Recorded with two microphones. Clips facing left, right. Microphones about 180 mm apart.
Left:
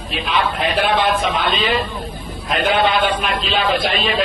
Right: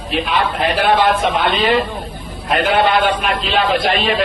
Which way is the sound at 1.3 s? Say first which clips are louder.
Right 4 dB; 55° right (ahead or behind).